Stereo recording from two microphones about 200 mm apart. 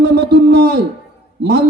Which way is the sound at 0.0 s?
55° right (ahead or behind).